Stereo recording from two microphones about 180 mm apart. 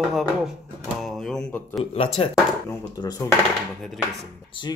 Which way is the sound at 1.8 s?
35° left (ahead or behind).